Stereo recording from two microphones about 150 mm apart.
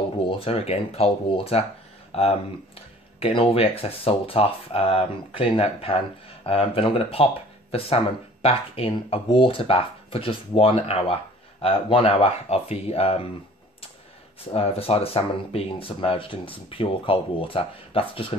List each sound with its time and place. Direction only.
0.3 s speech: 40° left (ahead or behind)
3.2 s speech: 40° left (ahead or behind)
14.4 s speech: 40° left (ahead or behind)